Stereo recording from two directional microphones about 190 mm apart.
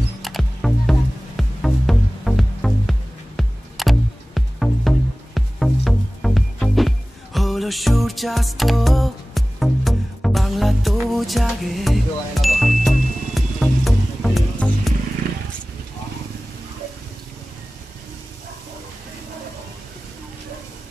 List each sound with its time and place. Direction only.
0.2 s music: centre (ahead or behind)